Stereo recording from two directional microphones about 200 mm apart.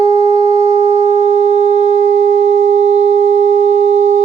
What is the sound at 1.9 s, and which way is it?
Sine wave, 30° right (ahead or behind).